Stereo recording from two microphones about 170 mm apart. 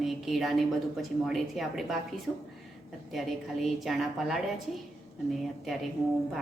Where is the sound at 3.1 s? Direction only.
Centre (ahead or behind).